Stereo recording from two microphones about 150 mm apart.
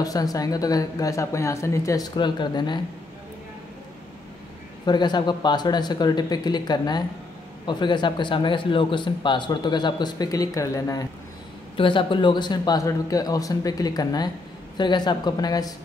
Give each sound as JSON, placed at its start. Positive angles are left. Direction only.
{"t": 0.0, "sound": "a woman's voice", "side_deg": 25}
{"t": 4.8, "sound": "a woman's voice", "side_deg": 30}
{"t": 11.7, "sound": "a woman's voice", "side_deg": 35}